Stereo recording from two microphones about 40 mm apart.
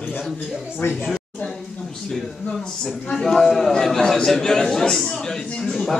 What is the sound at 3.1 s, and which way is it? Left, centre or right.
A man's voice, centre.